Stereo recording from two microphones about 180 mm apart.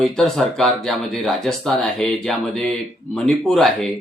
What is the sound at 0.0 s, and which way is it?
Speech, centre (ahead or behind).